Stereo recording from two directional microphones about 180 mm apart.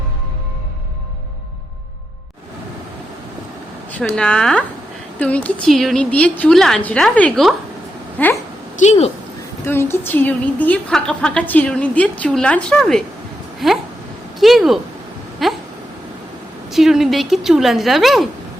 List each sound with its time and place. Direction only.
4.0 s a woman's voice: 5° left (ahead or behind)
8.8 s speech: 40° left (ahead or behind)
9.6 s a woman's voice: 15° left (ahead or behind)
15.4 s a sound: centre (ahead or behind)
16.7 s a woman's voice: centre (ahead or behind)